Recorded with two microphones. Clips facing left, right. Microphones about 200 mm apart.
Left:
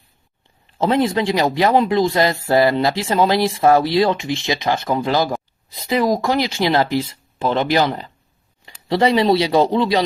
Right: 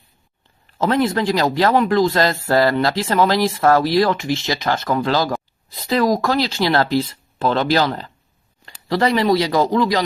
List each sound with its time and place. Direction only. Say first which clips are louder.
0.8 s speech: left 1 dB; 15° left (ahead or behind)